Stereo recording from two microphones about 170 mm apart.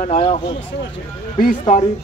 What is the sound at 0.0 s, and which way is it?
Speech, 35° left (ahead or behind).